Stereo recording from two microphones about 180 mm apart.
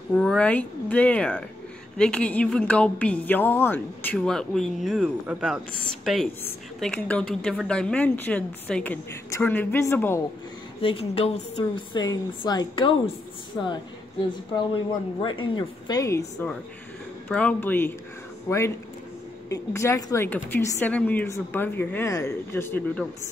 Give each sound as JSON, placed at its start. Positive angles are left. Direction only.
{"t": 0.1, "sound": "a woman's voice", "side_deg": 5}
{"t": 10.8, "sound": "a woman's voice", "side_deg": 30}
{"t": 14.5, "sound": "a woman's voice", "side_deg": 25}
{"t": 17.3, "sound": "a woman's voice", "side_deg": 5}